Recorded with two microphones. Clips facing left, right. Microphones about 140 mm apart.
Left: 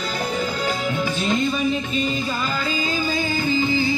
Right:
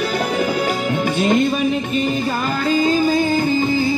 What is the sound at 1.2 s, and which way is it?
Music, 60° right (ahead or behind).